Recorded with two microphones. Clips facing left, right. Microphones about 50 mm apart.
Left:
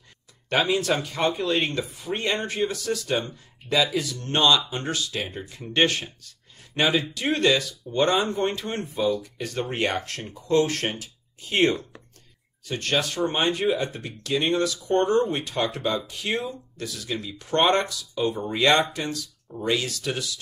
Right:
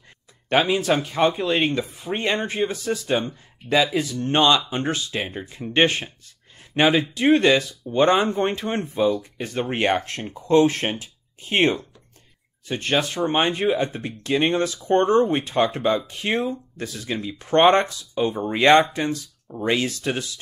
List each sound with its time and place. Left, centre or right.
0.5 s speech: right